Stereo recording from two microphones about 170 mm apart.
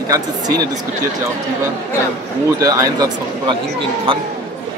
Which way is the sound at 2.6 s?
20° right (ahead or behind).